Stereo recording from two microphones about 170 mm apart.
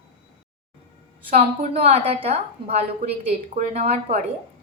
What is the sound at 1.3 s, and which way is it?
A woman's voice, 35° right (ahead or behind).